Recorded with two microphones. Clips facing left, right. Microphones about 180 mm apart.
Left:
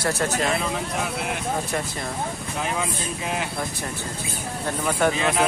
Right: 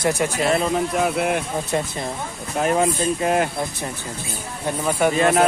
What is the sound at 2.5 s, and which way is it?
Speech, 50° right (ahead or behind).